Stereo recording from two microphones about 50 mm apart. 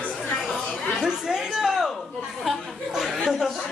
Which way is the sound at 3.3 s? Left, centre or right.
Centre.